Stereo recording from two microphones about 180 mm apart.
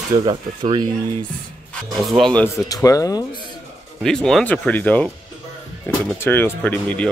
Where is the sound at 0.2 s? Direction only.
25° right (ahead or behind).